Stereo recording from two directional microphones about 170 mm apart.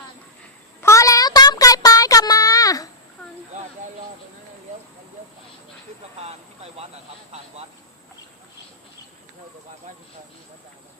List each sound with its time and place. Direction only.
0.8 s child singing: 15° left (ahead or behind)